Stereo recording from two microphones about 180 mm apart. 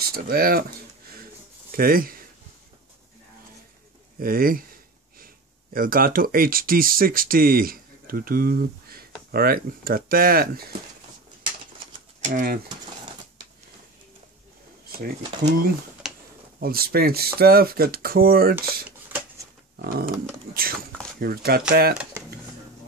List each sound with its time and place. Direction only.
0.0 s speech: 60° right (ahead or behind)
1.2 s a sound: 55° right (ahead or behind)
4.2 s speech: 50° right (ahead or behind)
12.2 s speech: 45° right (ahead or behind)
14.9 s speech: 55° right (ahead or behind)
16.0 s a sound: 5° right (ahead or behind)
16.5 s speech: 55° right (ahead or behind)
18.9 s shuffling cards: 10° right (ahead or behind)
19.8 s speech: 60° right (ahead or behind)
21.2 s speech: 55° right (ahead or behind)